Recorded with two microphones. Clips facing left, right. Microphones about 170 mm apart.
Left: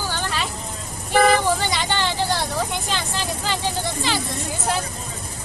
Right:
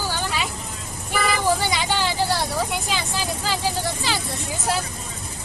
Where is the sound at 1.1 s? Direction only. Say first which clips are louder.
Left 8 dB; 50° left (ahead or behind).